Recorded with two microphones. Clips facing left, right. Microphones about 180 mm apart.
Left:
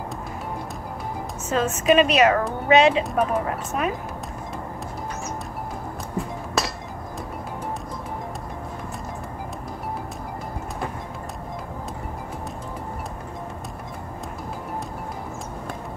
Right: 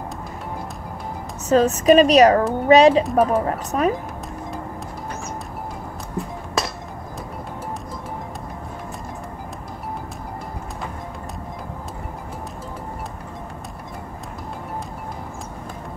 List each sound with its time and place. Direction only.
1.5 s a woman's voice: 35° right (ahead or behind)